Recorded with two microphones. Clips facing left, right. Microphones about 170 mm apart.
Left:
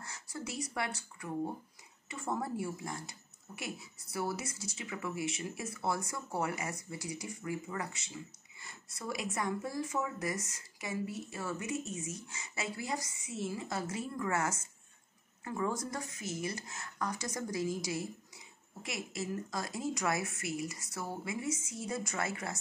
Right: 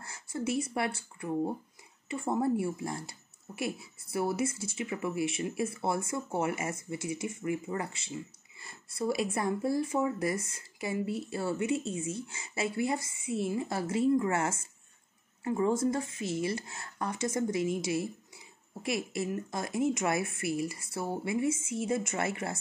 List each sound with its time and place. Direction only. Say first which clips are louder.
0.0 s speech: right 8 dB; 25° right (ahead or behind)